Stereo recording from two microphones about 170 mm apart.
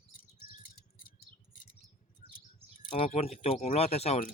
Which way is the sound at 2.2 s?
35° right (ahead or behind).